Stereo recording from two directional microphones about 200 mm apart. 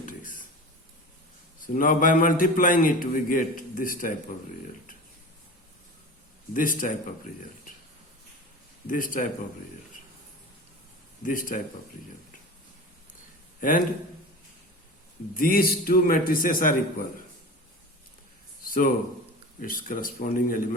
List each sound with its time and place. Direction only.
0.0 s a sound: 40° left (ahead or behind)
1.6 s a man's voice: 40° left (ahead or behind)
6.5 s speech: 40° left (ahead or behind)
8.9 s a man's voice: 45° left (ahead or behind)
11.2 s a man's voice: 40° left (ahead or behind)
13.6 s a man's voice: 40° left (ahead or behind)
15.4 s a man's voice: 45° left (ahead or behind)
18.6 s a sound: 45° left (ahead or behind)
19.5 s a man's voice: 45° left (ahead or behind)